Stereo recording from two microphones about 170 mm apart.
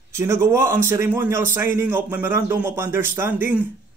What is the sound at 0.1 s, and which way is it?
A man's voice, 15° right (ahead or behind).